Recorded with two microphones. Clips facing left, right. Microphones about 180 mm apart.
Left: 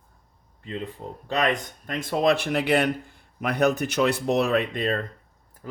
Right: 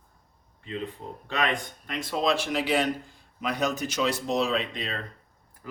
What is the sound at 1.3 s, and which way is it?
Speech, 40° left (ahead or behind).